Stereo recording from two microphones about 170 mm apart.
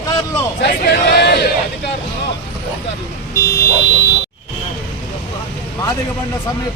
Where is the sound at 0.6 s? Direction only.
75° left (ahead or behind).